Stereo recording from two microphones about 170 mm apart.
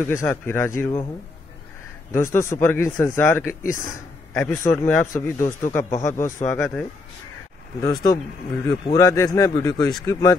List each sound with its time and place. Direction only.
0.0 s a man's voice: 15° left (ahead or behind)
2.1 s a man's voice: 15° left (ahead or behind)
3.6 s speech: 50° left (ahead or behind)
4.3 s a man's voice: 5° left (ahead or behind)
7.8 s speech: 25° left (ahead or behind)